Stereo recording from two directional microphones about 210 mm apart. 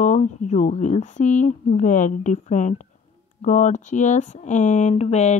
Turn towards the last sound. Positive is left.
turn(degrees=30)  # may be behind; listen again after turning